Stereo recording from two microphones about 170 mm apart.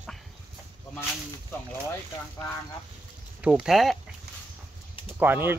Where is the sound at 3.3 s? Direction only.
5° right (ahead or behind).